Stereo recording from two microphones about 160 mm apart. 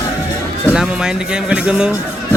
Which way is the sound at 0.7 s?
5° right (ahead or behind).